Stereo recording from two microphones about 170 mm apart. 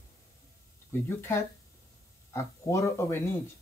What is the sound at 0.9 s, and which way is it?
Speech, 15° left (ahead or behind).